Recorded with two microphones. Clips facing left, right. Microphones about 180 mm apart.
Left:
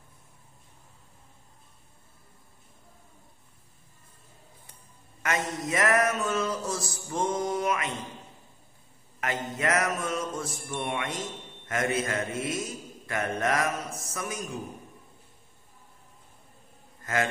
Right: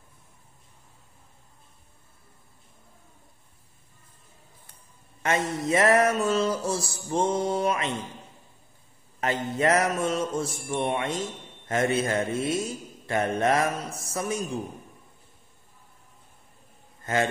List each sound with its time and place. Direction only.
5.2 s a sound: 30° right (ahead or behind)
9.2 s mantra: 30° right (ahead or behind)
17.0 s a man's voice: 30° right (ahead or behind)